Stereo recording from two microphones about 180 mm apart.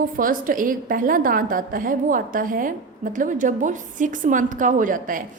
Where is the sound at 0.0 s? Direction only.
50° right (ahead or behind).